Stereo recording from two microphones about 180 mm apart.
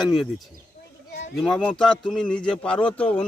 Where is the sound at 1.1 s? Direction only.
55° left (ahead or behind).